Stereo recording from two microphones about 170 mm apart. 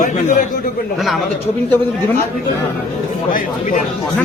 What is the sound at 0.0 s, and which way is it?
Speech, 50° left (ahead or behind).